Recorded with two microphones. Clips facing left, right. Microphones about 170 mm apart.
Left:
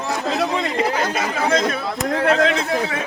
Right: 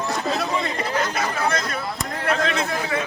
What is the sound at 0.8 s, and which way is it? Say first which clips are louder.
Speech: left 4 dB; 90° left.